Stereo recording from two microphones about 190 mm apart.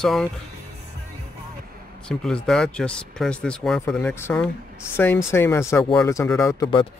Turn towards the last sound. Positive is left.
turn(degrees=20)  # may be behind; listen again after turning